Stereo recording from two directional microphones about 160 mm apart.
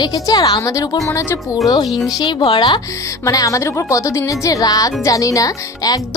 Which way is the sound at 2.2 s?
30° left (ahead or behind).